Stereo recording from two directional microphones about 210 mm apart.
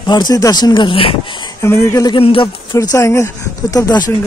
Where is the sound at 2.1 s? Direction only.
25° left (ahead or behind).